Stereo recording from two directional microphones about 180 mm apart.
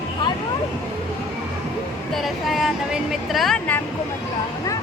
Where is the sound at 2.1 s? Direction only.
Centre (ahead or behind).